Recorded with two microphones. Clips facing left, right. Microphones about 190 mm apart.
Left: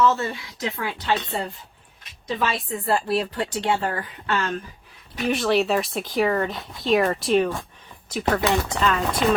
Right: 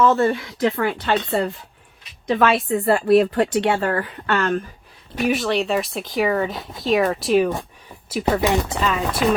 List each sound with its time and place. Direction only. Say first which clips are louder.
0.0 s speech: right 5 dB; 55° right (ahead or behind)
5.3 s speech: left 1 dB; centre (ahead or behind); by 8.8 s 15° right (ahead or behind)
8.8 s speech: right 1 dB; 5° right (ahead or behind)